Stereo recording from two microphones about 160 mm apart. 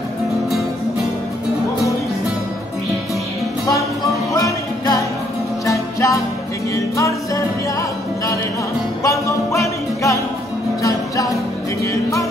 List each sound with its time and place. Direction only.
4.3 s music: 20° left (ahead or behind)
9.0 s music: 20° left (ahead or behind)